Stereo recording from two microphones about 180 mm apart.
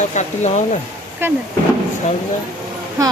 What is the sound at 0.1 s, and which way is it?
Speech, 40° left (ahead or behind).